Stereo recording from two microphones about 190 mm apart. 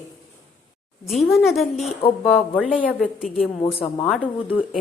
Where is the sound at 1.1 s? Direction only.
Centre (ahead or behind).